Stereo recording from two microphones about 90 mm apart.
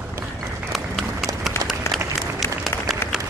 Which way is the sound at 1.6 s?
30° left (ahead or behind).